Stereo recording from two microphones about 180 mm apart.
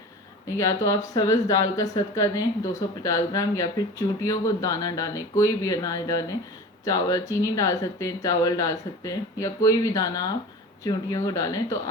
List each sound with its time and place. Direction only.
0.5 s speech: 15° left (ahead or behind)